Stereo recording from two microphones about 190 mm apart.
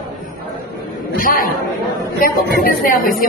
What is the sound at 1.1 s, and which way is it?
A woman's voice, 50° left (ahead or behind).